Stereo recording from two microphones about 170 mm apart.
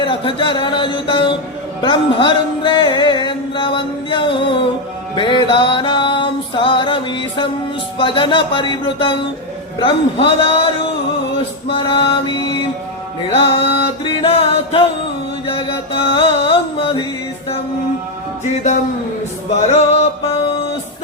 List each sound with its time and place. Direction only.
0.0 s music: 30° left (ahead or behind)
11.7 s music: 30° left (ahead or behind)
18.4 s a sound: 45° left (ahead or behind)
19.6 s music: 40° left (ahead or behind)